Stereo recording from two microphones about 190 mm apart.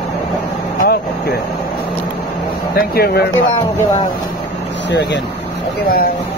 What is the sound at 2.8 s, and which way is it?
Speech, 55° left (ahead or behind).